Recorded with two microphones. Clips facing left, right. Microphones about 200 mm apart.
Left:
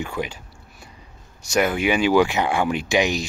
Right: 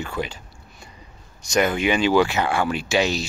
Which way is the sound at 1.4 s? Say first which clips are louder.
Even; 10° left (ahead or behind).